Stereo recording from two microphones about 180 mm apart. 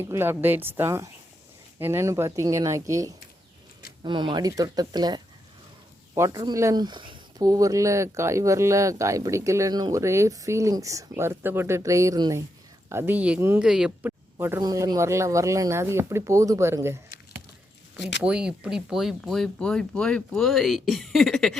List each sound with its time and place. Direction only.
0.0 s speech: 10° right (ahead or behind)
18.2 s speech: 5° right (ahead or behind)